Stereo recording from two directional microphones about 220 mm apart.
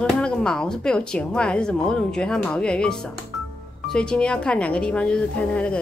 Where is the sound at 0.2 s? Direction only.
5° left (ahead or behind).